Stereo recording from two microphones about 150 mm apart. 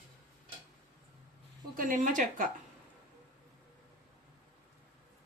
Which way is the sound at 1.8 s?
60° right (ahead or behind).